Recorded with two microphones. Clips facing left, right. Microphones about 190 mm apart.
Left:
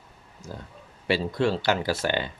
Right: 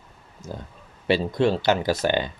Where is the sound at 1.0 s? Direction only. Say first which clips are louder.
Right 3 dB; 20° right (ahead or behind).